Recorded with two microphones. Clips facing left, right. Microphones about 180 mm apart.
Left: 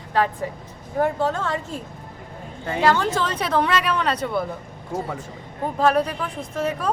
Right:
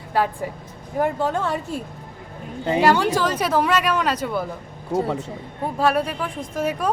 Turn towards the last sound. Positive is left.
turn(degrees=-10)  # may be behind; listen again after turning